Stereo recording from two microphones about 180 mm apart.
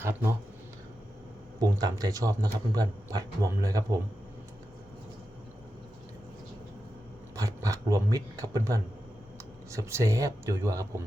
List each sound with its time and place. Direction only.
0.0 s speech: 10° right (ahead or behind)
1.6 s a man's voice: 20° right (ahead or behind)
7.3 s a man's voice: 20° right (ahead or behind)